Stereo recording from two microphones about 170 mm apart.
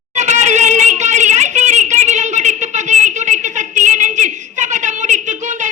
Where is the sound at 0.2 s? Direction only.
45° right (ahead or behind).